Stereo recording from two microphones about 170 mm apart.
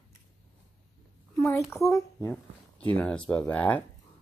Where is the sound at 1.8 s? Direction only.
20° left (ahead or behind).